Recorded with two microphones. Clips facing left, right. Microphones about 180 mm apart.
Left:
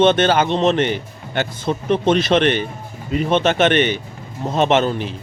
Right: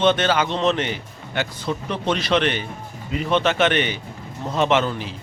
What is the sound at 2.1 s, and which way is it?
Speech, 50° left (ahead or behind).